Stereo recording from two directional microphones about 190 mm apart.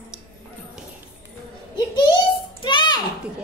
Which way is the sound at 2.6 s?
25° left (ahead or behind).